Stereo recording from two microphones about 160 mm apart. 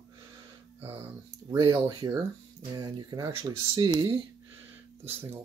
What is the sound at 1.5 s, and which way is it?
Speech, 25° right (ahead or behind).